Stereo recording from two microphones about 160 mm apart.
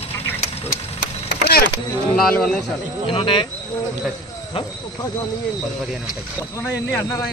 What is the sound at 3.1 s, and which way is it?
Speech, 35° left (ahead or behind).